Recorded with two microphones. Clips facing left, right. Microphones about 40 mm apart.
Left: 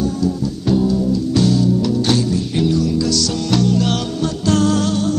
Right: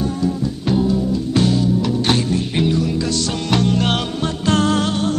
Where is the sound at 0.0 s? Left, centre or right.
Right.